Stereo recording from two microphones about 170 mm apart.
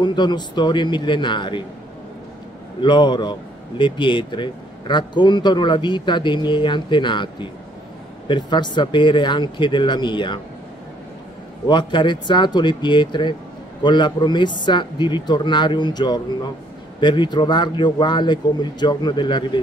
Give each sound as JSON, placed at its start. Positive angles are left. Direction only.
{"t": 0.0, "sound": "speech", "side_deg": 25}
{"t": 2.8, "sound": "speech", "side_deg": 25}
{"t": 11.6, "sound": "speech", "side_deg": 25}